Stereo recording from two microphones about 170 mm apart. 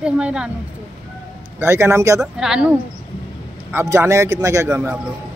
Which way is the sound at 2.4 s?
5° right (ahead or behind).